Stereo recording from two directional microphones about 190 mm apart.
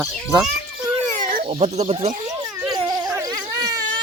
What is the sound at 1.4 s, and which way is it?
Speech, 30° right (ahead or behind).